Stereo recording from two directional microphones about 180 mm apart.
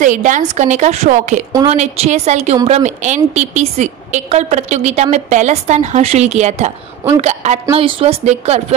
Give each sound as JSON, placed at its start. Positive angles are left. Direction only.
{"t": 0.0, "sound": "a woman's voice", "side_deg": -45}